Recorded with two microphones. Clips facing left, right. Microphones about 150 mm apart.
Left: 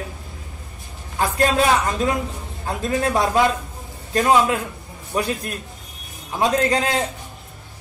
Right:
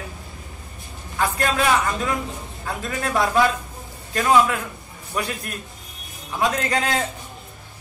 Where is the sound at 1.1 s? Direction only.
30° left (ahead or behind).